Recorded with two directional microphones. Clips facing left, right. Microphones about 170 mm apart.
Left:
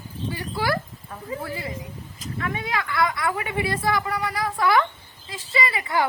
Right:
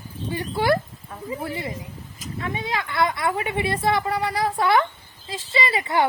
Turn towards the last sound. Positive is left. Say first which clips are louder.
# right 2 dB
turn(degrees=-25)  # may be behind; listen again after turning